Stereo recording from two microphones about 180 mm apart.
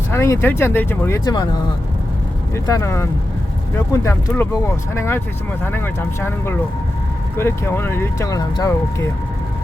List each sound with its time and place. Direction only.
0.1 s speech: 15° left (ahead or behind)
2.6 s speech: 15° left (ahead or behind)